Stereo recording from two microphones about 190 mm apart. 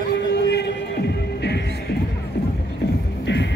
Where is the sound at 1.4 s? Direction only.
65° left (ahead or behind).